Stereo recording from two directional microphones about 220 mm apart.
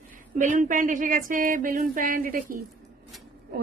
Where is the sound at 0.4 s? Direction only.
35° right (ahead or behind).